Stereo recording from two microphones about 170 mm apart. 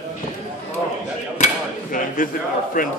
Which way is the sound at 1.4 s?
50° left (ahead or behind).